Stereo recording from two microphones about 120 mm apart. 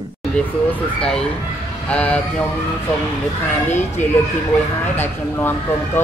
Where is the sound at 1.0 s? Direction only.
5° left (ahead or behind).